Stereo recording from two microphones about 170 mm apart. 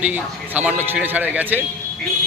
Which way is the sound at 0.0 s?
10° right (ahead or behind).